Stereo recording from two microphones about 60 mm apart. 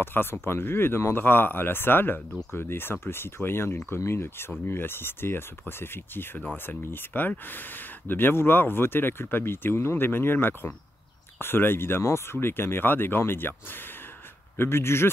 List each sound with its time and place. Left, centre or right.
0.0 s speech: left